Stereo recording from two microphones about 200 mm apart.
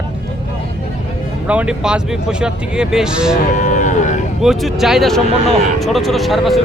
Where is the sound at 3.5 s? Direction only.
40° left (ahead or behind).